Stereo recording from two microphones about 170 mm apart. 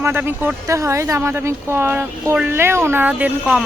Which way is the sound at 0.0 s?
15° right (ahead or behind).